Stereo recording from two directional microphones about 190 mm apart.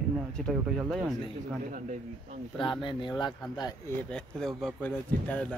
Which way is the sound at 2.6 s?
25° left (ahead or behind).